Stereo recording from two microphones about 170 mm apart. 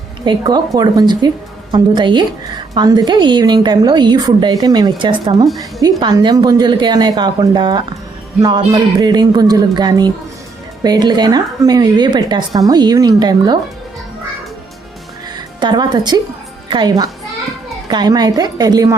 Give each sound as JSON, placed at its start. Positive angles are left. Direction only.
{"t": 0.3, "sound": "a woman's voice", "side_deg": -25}
{"t": 15.6, "sound": "a woman's voice", "side_deg": -25}